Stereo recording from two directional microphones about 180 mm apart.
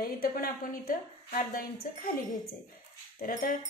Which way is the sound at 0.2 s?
55° left (ahead or behind).